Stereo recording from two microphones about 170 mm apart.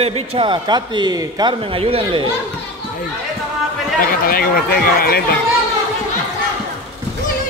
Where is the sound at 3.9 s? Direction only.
55° left (ahead or behind).